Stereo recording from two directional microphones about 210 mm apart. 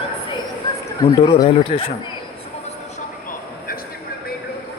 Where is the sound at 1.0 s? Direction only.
20° left (ahead or behind).